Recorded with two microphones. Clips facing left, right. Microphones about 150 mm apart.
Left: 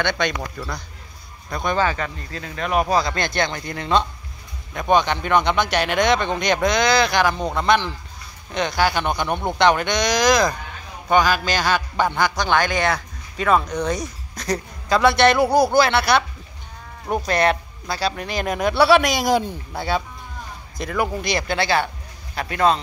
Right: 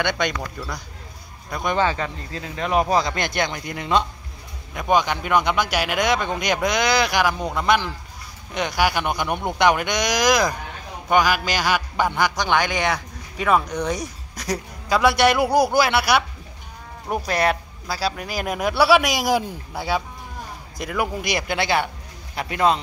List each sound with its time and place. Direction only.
0.0 s a man's voice: 10° right (ahead or behind)